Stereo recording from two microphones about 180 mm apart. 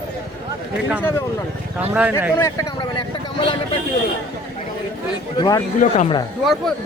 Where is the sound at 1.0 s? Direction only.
15° left (ahead or behind).